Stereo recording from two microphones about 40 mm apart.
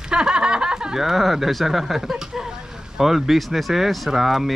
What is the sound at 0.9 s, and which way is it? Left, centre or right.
Speech, centre.